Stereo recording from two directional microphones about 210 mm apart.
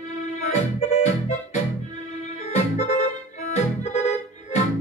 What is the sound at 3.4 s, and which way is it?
Music, 35° left (ahead or behind).